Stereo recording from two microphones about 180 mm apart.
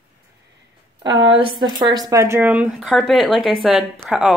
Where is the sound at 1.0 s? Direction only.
25° right (ahead or behind).